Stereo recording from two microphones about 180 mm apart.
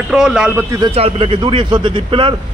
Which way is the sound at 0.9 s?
30° right (ahead or behind).